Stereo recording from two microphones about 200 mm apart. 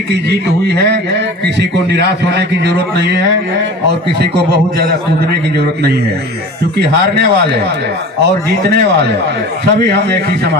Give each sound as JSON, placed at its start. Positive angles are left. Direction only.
{"t": 0.1, "sound": "a man's voice", "side_deg": -55}
{"t": 4.2, "sound": "a man's voice", "side_deg": -55}
{"t": 9.7, "sound": "a man's voice", "side_deg": -55}